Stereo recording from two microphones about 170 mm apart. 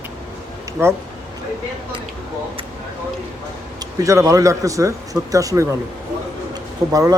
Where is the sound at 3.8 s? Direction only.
20° right (ahead or behind).